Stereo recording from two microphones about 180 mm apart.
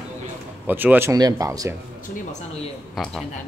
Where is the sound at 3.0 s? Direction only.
5° left (ahead or behind).